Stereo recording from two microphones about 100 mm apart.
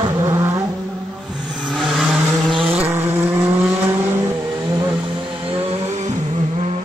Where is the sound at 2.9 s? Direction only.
25° right (ahead or behind).